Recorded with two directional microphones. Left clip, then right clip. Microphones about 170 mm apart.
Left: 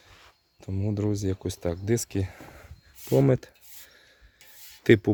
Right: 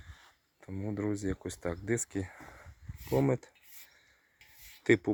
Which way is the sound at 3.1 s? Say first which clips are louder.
Left 7 dB; 60° left (ahead or behind).